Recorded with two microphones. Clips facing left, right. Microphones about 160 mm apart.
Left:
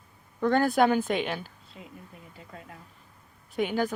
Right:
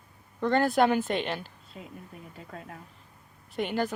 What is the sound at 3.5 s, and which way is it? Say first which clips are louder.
Speech: left 2 dB; centre (ahead or behind).